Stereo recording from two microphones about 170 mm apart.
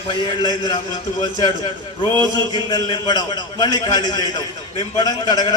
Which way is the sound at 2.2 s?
25° left (ahead or behind).